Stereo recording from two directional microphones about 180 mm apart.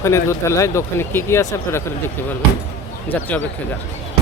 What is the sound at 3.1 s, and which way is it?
Speech, 10° left (ahead or behind).